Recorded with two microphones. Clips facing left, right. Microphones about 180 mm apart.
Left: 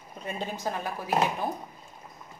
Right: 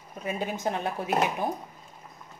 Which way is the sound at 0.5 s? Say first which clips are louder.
Right 3 dB; 20° right (ahead or behind).